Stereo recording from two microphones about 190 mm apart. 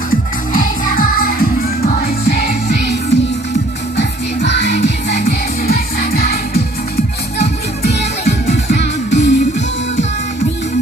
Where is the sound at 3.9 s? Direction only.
65° left (ahead or behind).